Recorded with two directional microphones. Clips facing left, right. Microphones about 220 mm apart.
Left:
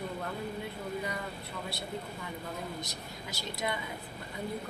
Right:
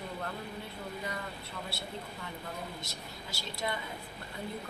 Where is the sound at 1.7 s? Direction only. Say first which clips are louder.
Left 3 dB; 15° left (ahead or behind).